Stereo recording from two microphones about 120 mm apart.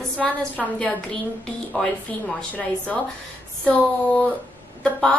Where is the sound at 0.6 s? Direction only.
5° left (ahead or behind).